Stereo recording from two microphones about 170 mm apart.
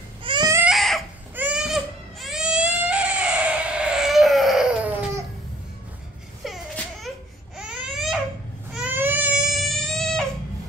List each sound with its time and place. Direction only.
0.2 s baby cry: 30° right (ahead or behind)
0.7 s crying: centre (ahead or behind)
1.3 s baby cry: 5° right (ahead or behind)
6.4 s a sound: centre (ahead or behind)
7.5 s baby cry: 5° right (ahead or behind)